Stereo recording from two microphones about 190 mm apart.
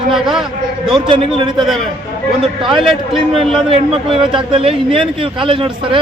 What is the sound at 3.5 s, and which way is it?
A man's voice, 30° right (ahead or behind).